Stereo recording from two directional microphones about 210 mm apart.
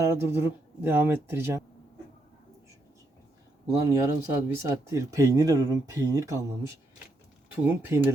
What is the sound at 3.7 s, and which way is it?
Speech, 15° right (ahead or behind).